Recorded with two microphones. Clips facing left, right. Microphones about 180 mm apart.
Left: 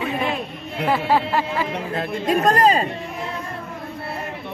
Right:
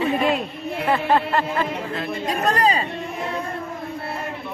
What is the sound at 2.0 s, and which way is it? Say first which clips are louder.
Speech: left 6 dB; 45° left (ahead or behind).